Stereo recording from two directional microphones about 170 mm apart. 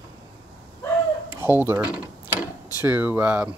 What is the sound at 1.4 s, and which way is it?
Speech, 10° right (ahead or behind).